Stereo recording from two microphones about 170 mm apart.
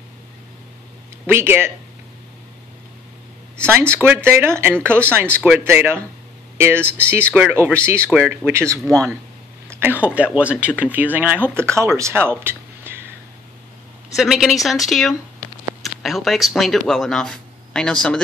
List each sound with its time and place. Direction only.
1.2 s speech: 15° right (ahead or behind)
3.9 s speech: 15° right (ahead or behind)
7.0 s speech: 15° right (ahead or behind)
8.8 s a woman's voice: 5° left (ahead or behind)
9.7 s speech: 10° right (ahead or behind)
14.1 s a woman's voice: centre (ahead or behind)